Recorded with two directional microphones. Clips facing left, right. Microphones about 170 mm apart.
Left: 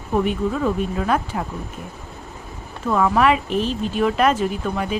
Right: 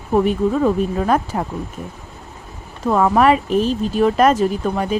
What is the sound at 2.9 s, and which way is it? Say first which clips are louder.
Speech: right 3 dB; 40° right (ahead or behind).